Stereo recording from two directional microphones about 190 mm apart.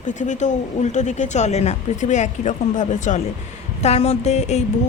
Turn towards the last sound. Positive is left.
turn(degrees=35)  # may be behind; listen again after turning